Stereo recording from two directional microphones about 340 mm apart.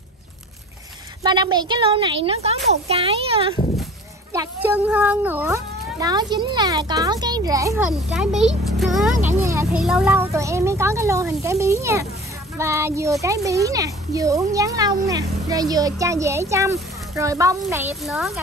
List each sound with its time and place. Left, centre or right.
1.2 s speech: centre